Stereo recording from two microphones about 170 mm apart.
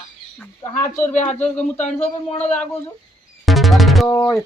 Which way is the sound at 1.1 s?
40° left (ahead or behind).